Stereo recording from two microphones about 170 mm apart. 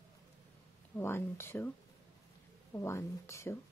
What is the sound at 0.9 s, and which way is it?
Speech, 15° left (ahead or behind).